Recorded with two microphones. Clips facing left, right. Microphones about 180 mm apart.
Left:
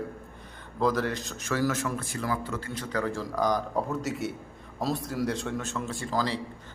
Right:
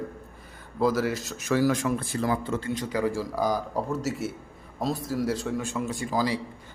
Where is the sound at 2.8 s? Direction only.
10° right (ahead or behind).